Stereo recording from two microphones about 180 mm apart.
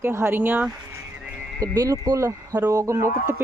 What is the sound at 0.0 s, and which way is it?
Speech, 15° right (ahead or behind).